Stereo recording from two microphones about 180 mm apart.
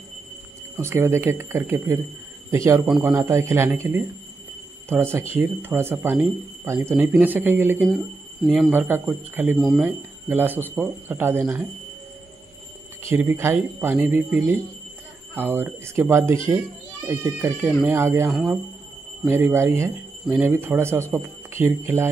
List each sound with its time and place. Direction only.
0.7 s speech: 15° right (ahead or behind)
9.6 s speech: centre (ahead or behind)
9.8 s speech: 10° right (ahead or behind)
13.1 s speech: 10° right (ahead or behind)